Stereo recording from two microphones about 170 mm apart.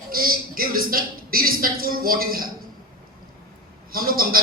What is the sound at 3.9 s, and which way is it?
Speech, 60° right (ahead or behind).